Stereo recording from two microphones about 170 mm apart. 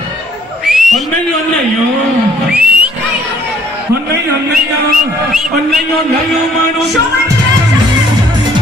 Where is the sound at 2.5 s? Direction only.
10° right (ahead or behind).